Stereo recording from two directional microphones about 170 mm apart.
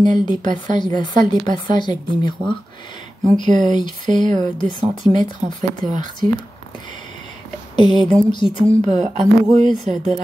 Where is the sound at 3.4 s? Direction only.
45° right (ahead or behind).